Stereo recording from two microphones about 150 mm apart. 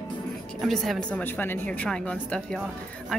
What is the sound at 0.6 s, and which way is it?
A woman's voice, centre (ahead or behind).